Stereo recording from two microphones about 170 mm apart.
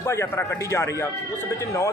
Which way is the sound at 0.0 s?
15° left (ahead or behind).